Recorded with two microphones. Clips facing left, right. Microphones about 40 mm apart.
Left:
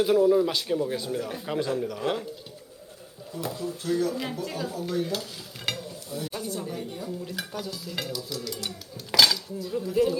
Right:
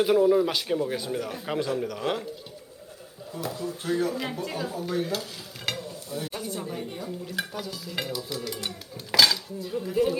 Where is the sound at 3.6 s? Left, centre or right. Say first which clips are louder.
Even; right.